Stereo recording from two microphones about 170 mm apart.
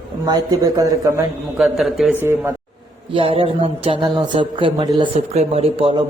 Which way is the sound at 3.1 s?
30° right (ahead or behind).